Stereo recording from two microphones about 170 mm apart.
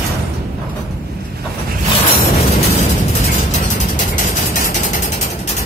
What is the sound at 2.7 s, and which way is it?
Music, 40° left (ahead or behind).